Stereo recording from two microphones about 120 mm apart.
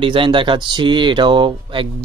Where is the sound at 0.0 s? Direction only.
45° right (ahead or behind).